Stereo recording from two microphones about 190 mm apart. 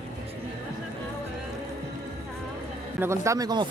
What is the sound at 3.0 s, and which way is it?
Speech, 15° right (ahead or behind).